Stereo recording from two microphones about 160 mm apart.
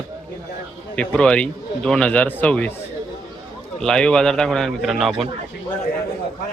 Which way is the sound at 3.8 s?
5° left (ahead or behind).